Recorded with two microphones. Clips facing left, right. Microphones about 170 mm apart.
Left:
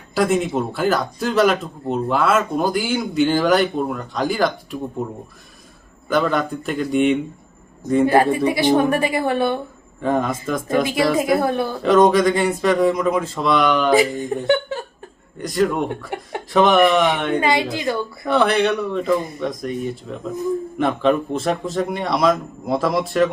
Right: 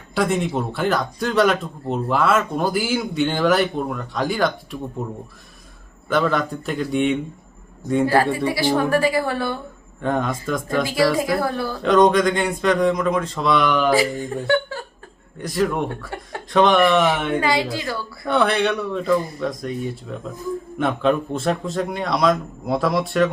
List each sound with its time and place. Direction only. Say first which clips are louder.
0.1 s speech: left 2 dB; centre (ahead or behind)
6.1 s speech: left 1 dB; centre (ahead or behind)
8.0 s speech: left 3 dB; 20° left (ahead or behind)
10.0 s speech: left 2 dB; centre (ahead or behind)
10.8 s speech: right 1 dB; 20° left (ahead or behind)
11.8 s speech: left 1 dB; 5° left (ahead or behind)
13.9 s speech: left 3 dB; 20° left (ahead or behind)
15.4 s speech: left 2 dB; centre (ahead or behind)
15.9 s speech: left 4 dB; 20° left (ahead or behind)
16.5 s speech: left 1 dB; 5° left (ahead or behind)
17.4 s speech: left 2 dB; 20° left (ahead or behind)
18.3 s speech: left 2 dB; centre (ahead or behind)